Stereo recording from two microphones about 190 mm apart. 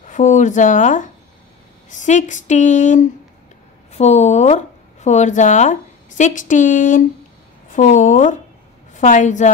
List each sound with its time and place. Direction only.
0.0 s a woman's voice: 40° left (ahead or behind)